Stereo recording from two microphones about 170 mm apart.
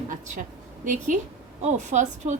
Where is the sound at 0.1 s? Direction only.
50° right (ahead or behind).